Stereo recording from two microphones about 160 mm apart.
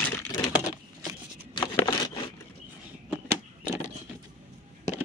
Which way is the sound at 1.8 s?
25° left (ahead or behind).